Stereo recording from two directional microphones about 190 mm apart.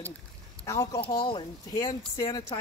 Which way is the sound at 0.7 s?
15° left (ahead or behind).